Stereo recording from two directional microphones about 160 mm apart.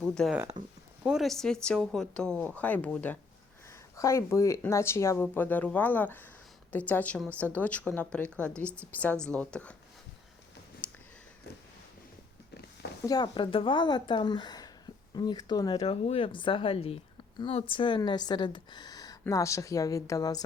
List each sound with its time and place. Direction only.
0.0 s speech: 5° left (ahead or behind)
13.1 s speech: 25° left (ahead or behind)
15.8 s a woman's voice: 40° left (ahead or behind); by 20.4 s 20° left (ahead or behind)